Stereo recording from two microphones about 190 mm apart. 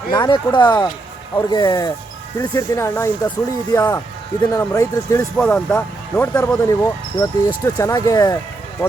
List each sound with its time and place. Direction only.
0.1 s speech: 25° left (ahead or behind)